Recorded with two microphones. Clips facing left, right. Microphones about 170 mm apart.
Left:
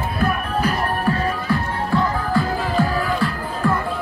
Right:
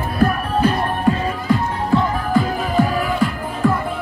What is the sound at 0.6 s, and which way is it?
Music, 20° right (ahead or behind).